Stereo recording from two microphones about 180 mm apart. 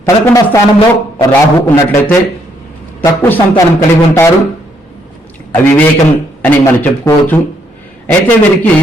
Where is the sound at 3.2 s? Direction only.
15° left (ahead or behind).